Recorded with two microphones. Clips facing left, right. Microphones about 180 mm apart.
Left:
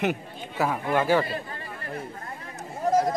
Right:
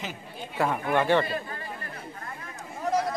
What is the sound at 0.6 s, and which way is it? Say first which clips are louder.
Speech: left 1 dB; 5° left (ahead or behind).